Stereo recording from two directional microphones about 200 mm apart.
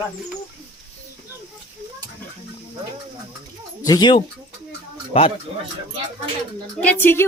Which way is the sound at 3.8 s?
20° left (ahead or behind).